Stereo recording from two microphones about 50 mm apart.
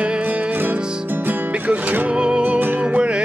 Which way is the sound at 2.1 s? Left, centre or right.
Centre.